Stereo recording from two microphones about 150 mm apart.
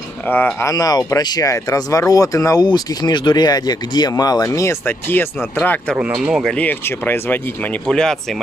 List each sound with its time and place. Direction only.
0.3 s speech: 15° left (ahead or behind)
5.9 s speech: 10° right (ahead or behind)
6.5 s speech: 10° left (ahead or behind)